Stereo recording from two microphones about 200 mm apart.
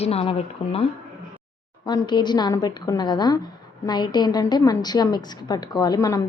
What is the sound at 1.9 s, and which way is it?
A woman's voice, 20° left (ahead or behind).